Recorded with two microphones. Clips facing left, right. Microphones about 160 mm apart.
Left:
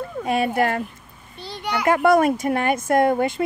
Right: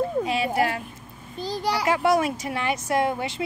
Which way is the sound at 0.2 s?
50° left (ahead or behind).